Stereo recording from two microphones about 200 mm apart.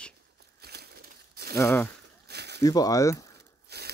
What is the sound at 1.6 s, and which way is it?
Speech, 15° left (ahead or behind).